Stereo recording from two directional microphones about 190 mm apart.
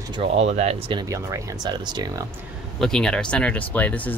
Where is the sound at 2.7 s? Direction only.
5° left (ahead or behind).